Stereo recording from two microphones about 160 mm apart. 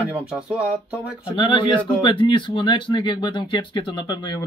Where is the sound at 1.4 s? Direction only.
35° left (ahead or behind).